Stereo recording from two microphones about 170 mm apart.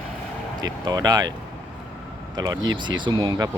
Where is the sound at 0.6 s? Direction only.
25° right (ahead or behind).